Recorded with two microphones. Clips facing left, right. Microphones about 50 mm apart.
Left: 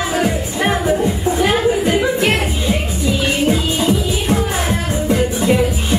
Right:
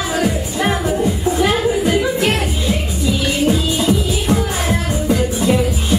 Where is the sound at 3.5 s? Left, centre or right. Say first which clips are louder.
Right 1 dB; left.